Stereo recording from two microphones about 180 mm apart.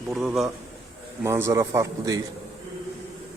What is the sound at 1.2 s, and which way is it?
A man's voice, 15° right (ahead or behind).